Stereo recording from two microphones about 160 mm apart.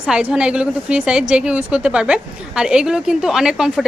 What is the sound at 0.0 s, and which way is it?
A woman's voice, 5° right (ahead or behind).